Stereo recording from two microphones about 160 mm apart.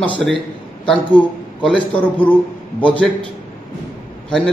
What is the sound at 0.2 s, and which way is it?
Speech, centre (ahead or behind).